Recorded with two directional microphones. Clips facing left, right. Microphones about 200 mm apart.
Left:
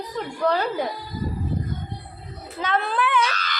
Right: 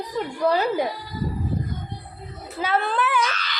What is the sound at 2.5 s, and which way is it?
Speech, 5° right (ahead or behind).